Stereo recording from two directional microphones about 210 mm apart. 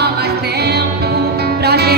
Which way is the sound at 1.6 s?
50° right (ahead or behind).